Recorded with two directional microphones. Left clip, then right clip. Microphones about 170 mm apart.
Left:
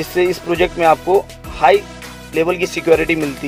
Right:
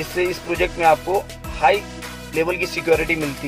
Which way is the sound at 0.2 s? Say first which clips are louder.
Left 6 dB; 35° left (ahead or behind).